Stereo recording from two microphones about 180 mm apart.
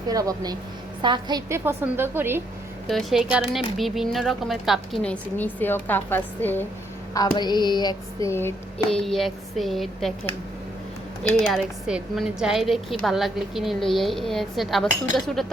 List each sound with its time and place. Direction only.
0.1 s a woman's voice: 20° right (ahead or behind)
2.8 s a woman's voice: centre (ahead or behind)
5.5 s female singing: 10° left (ahead or behind)
7.3 s female singing: 25° left (ahead or behind); by 10.1 s centre (ahead or behind)
11.2 s a woman's voice: centre (ahead or behind)